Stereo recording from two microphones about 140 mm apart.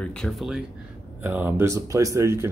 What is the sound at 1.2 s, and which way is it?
Speech, 15° right (ahead or behind).